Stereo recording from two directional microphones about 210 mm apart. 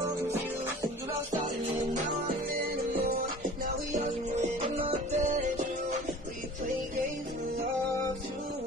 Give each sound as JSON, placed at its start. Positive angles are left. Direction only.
{"t": 3.9, "sound": "music", "side_deg": -30}